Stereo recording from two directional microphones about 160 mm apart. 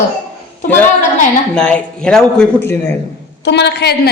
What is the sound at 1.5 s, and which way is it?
A man's voice, 5° left (ahead or behind).